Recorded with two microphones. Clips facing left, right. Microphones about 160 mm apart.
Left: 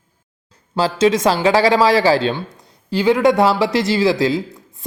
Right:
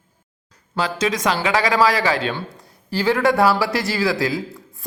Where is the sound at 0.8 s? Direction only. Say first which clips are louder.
Left 6 dB; 25° left (ahead or behind).